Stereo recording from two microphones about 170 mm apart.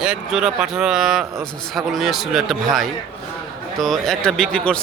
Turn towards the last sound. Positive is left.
turn(degrees=5)  # may be behind; listen again after turning